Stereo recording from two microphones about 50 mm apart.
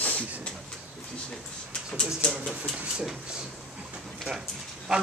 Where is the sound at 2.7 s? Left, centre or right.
Centre.